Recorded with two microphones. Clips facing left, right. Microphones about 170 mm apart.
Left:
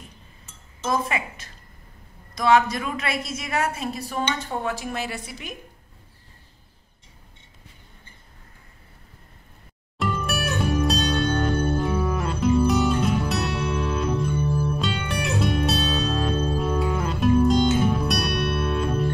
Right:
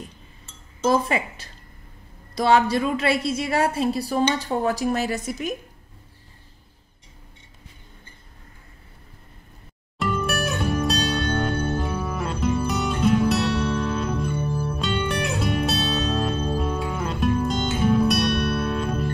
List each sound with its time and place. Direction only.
0.8 s a woman's voice: 30° right (ahead or behind)
9.9 s music: centre (ahead or behind)
14.3 s music: 10° right (ahead or behind)
14.8 s music: centre (ahead or behind)